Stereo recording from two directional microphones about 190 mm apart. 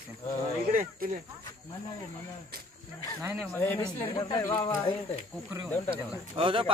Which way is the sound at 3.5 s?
10° left (ahead or behind).